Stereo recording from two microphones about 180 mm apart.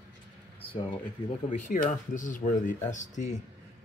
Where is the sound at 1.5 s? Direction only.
45° left (ahead or behind).